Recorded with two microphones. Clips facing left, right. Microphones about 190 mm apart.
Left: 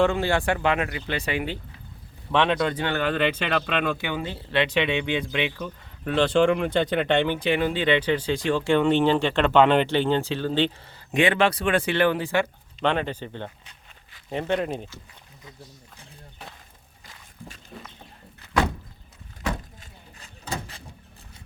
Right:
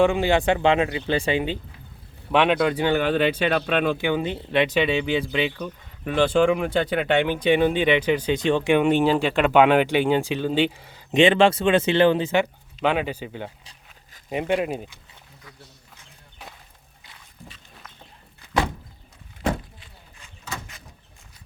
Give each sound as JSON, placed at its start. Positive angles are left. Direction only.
{"t": 0.0, "sound": "speech", "side_deg": -15}
{"t": 2.3, "sound": "speech", "side_deg": -15}
{"t": 4.1, "sound": "speech", "side_deg": -20}
{"t": 7.5, "sound": "speech", "side_deg": -20}
{"t": 11.2, "sound": "speech", "side_deg": -25}
{"t": 12.8, "sound": "speech", "side_deg": -10}
{"t": 19.8, "sound": "a sound", "side_deg": 35}